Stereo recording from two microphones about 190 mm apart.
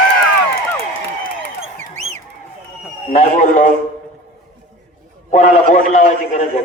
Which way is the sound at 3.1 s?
40° left (ahead or behind).